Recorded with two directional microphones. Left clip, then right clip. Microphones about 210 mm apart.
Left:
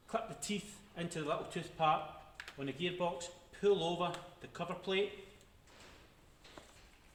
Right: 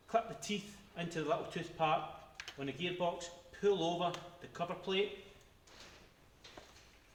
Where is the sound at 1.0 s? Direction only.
20° left (ahead or behind).